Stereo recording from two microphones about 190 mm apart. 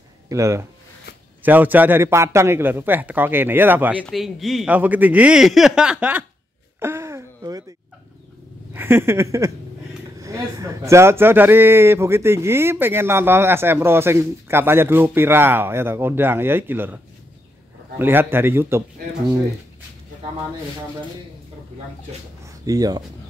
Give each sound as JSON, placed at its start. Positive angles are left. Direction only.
{"t": 0.3, "sound": "a man's voice", "side_deg": -15}
{"t": 6.8, "sound": "a sound", "side_deg": -15}
{"t": 8.7, "sound": "speech", "side_deg": -10}
{"t": 22.5, "sound": "speech", "side_deg": -20}